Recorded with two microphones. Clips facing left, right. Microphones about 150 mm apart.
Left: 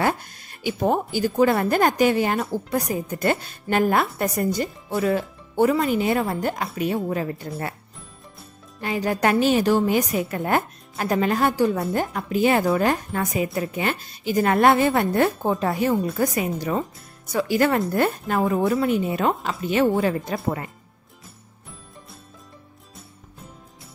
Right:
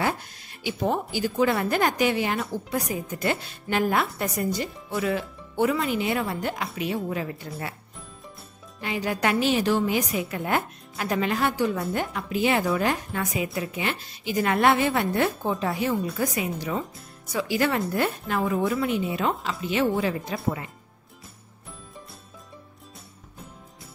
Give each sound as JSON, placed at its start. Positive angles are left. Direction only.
{"t": 0.0, "sound": "a woman's voice", "side_deg": 50}
{"t": 8.8, "sound": "a woman's voice", "side_deg": 40}